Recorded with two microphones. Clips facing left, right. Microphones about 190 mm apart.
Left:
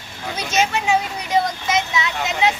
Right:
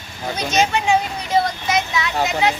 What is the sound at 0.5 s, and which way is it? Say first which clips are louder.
Speech: right 1 dB; 5° left (ahead or behind).